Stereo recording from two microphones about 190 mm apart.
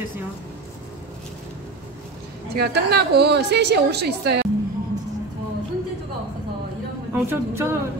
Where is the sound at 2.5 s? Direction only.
60° right (ahead or behind).